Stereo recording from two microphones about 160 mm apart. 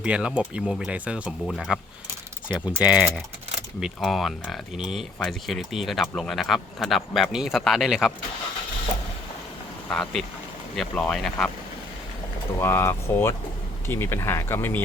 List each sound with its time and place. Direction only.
0.0 s speech: 5° right (ahead or behind)
9.9 s speech: centre (ahead or behind)
12.5 s speech: 15° left (ahead or behind)